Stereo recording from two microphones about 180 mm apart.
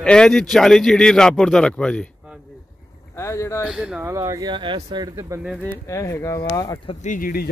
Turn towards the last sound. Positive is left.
turn(degrees=55)  # may be behind; listen again after turning